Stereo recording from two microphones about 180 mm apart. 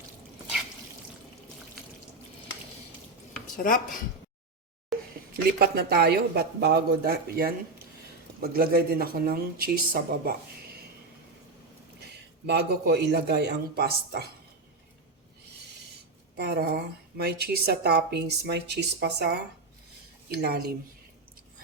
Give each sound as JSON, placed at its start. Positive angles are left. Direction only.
{"t": 3.6, "sound": "speech", "side_deg": 50}
{"t": 4.9, "sound": "a sound", "side_deg": 0}
{"t": 5.5, "sound": "a woman's voice", "side_deg": -60}
{"t": 12.5, "sound": "a woman's voice", "side_deg": -65}
{"t": 16.4, "sound": "a woman's voice", "side_deg": -65}
{"t": 20.3, "sound": "a woman's voice", "side_deg": -60}